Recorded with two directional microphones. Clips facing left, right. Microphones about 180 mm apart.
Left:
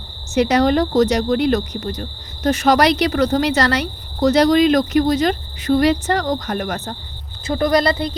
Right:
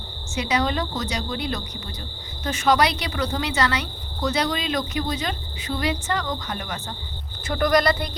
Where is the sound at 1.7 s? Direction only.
60° left (ahead or behind).